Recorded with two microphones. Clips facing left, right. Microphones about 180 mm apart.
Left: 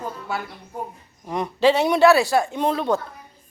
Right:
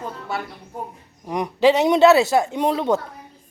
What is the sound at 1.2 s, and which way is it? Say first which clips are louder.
A man's voice: right 2 dB; 15° right (ahead or behind).